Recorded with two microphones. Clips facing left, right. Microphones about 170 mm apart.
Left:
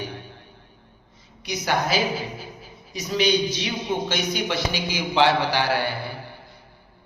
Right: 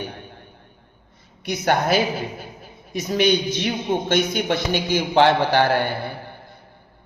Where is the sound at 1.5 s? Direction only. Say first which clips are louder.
Right 4 dB; 55° right (ahead or behind).